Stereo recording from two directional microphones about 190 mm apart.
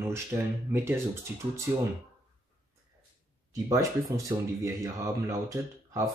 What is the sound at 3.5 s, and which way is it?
Speech, 15° right (ahead or behind).